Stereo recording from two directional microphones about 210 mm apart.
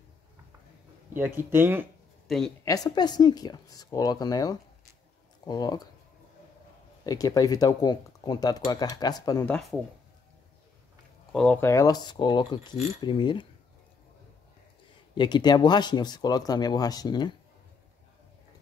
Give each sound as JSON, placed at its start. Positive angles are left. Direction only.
{"t": 1.1, "sound": "speech", "side_deg": -10}
{"t": 2.2, "sound": "speech", "side_deg": 0}
{"t": 2.6, "sound": "speech", "side_deg": 15}
{"t": 7.1, "sound": "speech", "side_deg": 15}
{"t": 11.3, "sound": "speech", "side_deg": 5}
{"t": 15.1, "sound": "speech", "side_deg": 20}